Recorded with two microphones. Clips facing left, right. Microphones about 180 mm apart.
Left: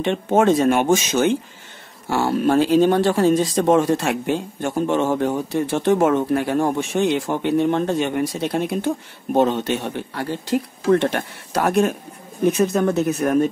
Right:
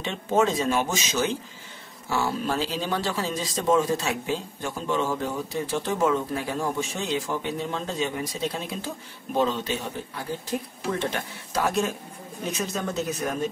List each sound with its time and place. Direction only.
0.0 s speech: 55° left (ahead or behind)